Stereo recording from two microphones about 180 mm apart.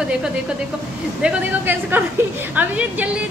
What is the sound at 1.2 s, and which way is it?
A woman's voice, 10° right (ahead or behind).